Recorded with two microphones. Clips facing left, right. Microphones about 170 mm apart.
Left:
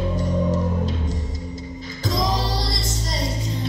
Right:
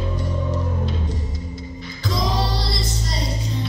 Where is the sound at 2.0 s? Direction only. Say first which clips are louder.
Even; 45° left (ahead or behind).